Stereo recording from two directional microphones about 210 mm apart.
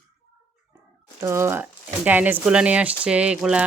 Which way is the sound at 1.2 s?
10° right (ahead or behind).